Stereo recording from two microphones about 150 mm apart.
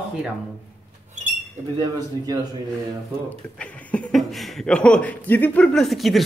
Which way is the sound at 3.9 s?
5° left (ahead or behind).